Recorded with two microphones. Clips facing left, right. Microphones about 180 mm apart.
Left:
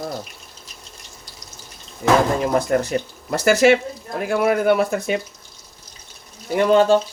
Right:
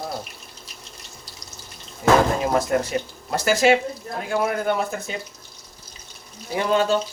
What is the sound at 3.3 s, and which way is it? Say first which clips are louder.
Speech: left 4 dB; 65° left (ahead or behind).